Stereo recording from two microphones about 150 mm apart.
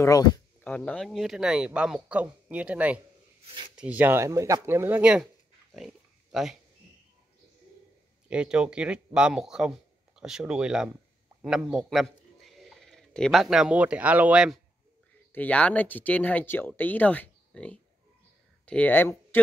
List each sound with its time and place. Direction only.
0.0 s speech: 25° left (ahead or behind)
0.7 s speech: 5° left (ahead or behind)
8.3 s a man's voice: 5° right (ahead or behind)
15.3 s speech: 10° left (ahead or behind)